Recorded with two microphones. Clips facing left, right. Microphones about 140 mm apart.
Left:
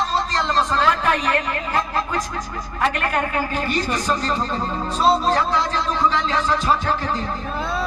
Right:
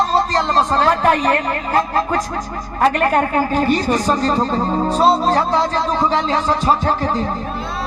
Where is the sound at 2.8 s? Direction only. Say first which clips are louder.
Right 7 dB; 40° right (ahead or behind).